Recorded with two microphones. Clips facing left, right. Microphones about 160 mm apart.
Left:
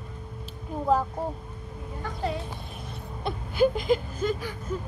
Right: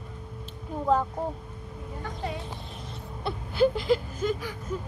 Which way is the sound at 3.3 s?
15° left (ahead or behind).